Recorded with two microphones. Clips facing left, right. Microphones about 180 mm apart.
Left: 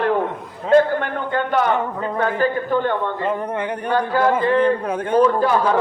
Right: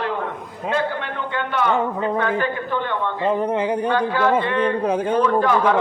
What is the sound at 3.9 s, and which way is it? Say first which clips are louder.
Speech: left 1 dB; 40° left (ahead or behind).